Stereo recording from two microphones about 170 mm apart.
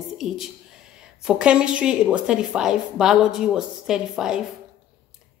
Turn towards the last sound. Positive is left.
turn(degrees=-5)  # may be behind; listen again after turning